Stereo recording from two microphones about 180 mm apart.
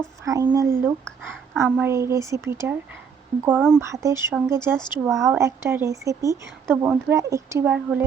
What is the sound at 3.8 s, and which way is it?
Speech, 15° right (ahead or behind).